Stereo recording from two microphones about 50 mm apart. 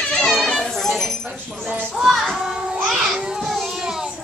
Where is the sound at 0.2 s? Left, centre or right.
Centre.